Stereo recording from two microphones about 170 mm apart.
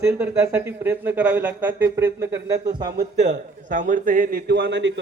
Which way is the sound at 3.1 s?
45° right (ahead or behind).